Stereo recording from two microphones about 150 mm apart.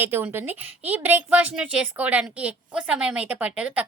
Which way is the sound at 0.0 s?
15° right (ahead or behind).